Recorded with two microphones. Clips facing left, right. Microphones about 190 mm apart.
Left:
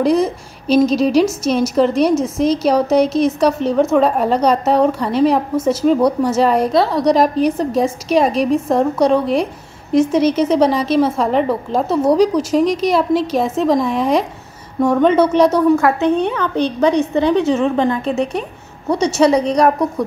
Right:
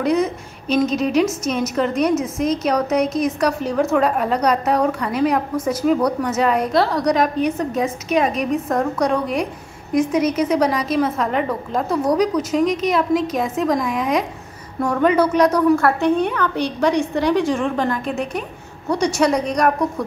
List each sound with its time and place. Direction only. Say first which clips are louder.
0.0 s a woman's voice: left 4 dB; 35° left (ahead or behind)